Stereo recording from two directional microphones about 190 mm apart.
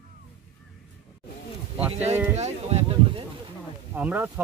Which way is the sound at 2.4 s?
35° right (ahead or behind).